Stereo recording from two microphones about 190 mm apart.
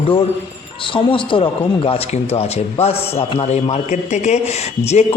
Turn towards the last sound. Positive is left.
turn(degrees=35)  # may be behind; listen again after turning